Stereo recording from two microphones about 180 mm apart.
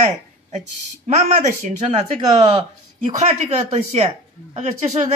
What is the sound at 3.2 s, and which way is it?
Speech, 40° right (ahead or behind).